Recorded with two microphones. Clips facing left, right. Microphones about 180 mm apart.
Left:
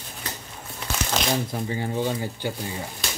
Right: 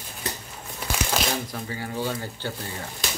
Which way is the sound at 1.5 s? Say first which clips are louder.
Left 4 dB; 20° left (ahead or behind).